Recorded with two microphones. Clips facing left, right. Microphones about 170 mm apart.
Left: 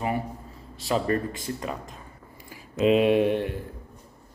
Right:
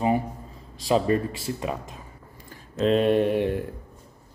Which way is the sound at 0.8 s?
15° right (ahead or behind).